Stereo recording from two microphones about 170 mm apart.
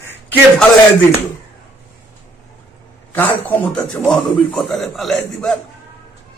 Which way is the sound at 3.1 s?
10° left (ahead or behind).